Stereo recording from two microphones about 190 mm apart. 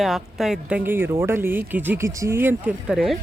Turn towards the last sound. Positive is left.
turn(degrees=-5)  # may be behind; listen again after turning